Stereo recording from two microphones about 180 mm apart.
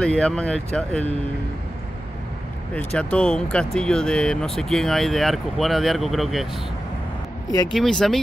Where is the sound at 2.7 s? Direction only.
5° left (ahead or behind).